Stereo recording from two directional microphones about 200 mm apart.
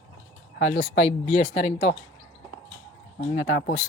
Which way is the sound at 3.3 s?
45° left (ahead or behind).